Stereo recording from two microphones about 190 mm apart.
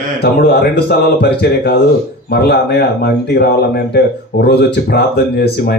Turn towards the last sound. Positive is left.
turn(degrees=55)  # may be behind; listen again after turning